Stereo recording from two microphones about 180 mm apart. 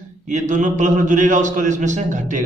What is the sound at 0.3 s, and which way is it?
A man's voice, 45° right (ahead or behind).